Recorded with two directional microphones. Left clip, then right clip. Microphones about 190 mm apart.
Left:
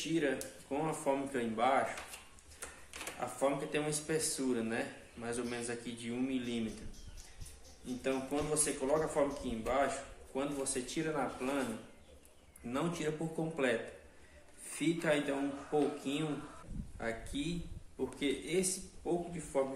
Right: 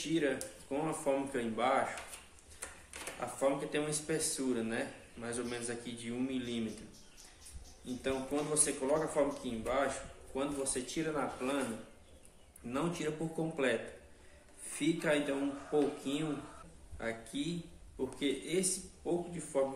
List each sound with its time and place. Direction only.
0.0 s speech: 5° left (ahead or behind)
3.2 s speech: 5° left (ahead or behind)
8.0 s speech: 5° left (ahead or behind)
12.6 s speech: 5° left (ahead or behind)
14.8 s speech: 5° left (ahead or behind)